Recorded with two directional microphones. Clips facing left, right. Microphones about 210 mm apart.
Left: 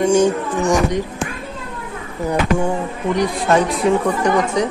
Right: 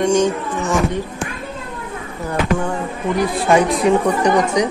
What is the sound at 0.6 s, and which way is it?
Speech, 15° left (ahead or behind).